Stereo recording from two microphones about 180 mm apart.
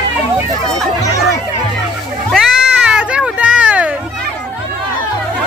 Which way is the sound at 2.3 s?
5° right (ahead or behind).